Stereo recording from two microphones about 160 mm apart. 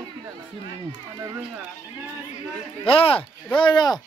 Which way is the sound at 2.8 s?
35° left (ahead or behind).